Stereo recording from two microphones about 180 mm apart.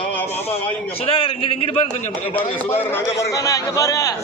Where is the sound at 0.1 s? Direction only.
10° left (ahead or behind).